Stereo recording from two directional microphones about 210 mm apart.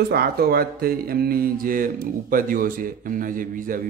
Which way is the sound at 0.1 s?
45° right (ahead or behind).